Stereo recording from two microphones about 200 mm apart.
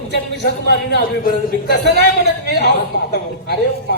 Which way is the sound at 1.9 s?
55° right (ahead or behind).